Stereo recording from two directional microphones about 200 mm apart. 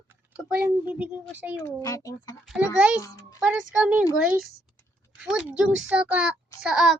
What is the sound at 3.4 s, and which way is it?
Speech, 5° right (ahead or behind).